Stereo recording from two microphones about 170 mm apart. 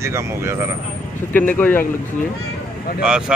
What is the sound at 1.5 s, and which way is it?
Speech, 10° left (ahead or behind).